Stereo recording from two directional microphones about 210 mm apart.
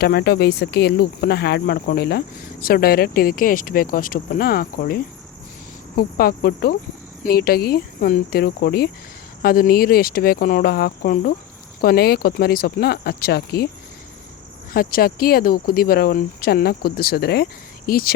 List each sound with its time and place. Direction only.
0.0 s speech: 50° left (ahead or behind)
6.0 s speech: 45° left (ahead or behind)
14.7 s speech: 45° left (ahead or behind)